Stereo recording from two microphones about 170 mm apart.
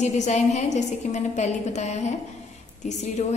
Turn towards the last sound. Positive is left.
turn(degrees=40)  # may be behind; listen again after turning